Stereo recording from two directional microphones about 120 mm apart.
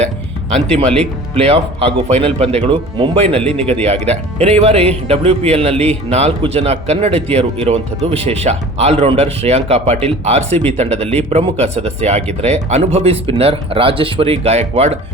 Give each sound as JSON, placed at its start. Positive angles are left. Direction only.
{"t": 0.5, "sound": "speech", "side_deg": -65}